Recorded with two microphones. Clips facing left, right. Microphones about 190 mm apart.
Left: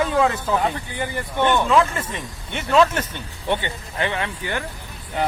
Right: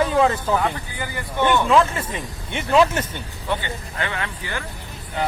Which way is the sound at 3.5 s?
25° left (ahead or behind).